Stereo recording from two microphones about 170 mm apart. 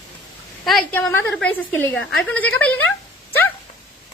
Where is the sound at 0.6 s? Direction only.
5° left (ahead or behind).